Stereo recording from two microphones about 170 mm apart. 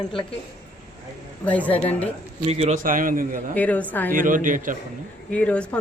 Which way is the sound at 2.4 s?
40° right (ahead or behind).